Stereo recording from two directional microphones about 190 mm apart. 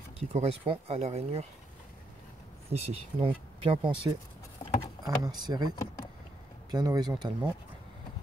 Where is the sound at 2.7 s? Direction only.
35° right (ahead or behind).